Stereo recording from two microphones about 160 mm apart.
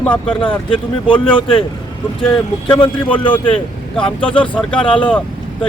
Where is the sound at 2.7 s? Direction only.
30° left (ahead or behind).